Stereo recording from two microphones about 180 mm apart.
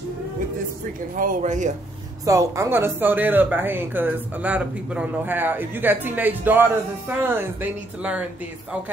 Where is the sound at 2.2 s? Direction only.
20° right (ahead or behind).